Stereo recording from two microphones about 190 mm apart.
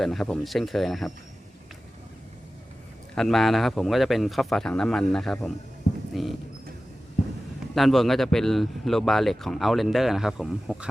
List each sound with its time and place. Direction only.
0.0 s speech: centre (ahead or behind)
3.2 s speech: centre (ahead or behind)
5.9 s a sound: 40° left (ahead or behind)
7.8 s speech: centre (ahead or behind)